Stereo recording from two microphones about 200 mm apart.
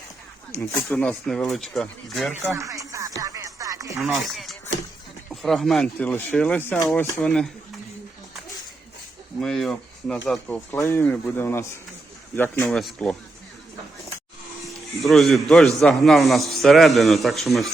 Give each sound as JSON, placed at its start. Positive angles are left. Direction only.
{"t": 0.5, "sound": "a man's voice", "side_deg": 15}
{"t": 2.6, "sound": "music", "side_deg": -15}
{"t": 4.0, "sound": "a man's voice", "side_deg": 0}
{"t": 9.4, "sound": "speech", "side_deg": 0}
{"t": 12.7, "sound": "a man's voice", "side_deg": 0}
{"t": 15.0, "sound": "a man's voice", "side_deg": 0}